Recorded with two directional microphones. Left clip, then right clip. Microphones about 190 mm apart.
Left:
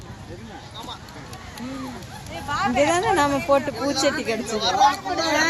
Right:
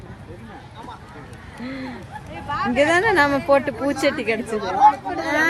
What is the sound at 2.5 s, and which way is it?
Speech, 45° left (ahead or behind).